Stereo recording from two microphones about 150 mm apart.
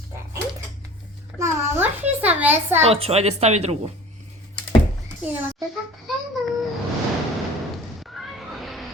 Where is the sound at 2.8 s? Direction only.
40° right (ahead or behind).